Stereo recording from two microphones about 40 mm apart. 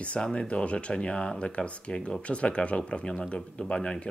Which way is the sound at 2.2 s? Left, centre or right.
Left.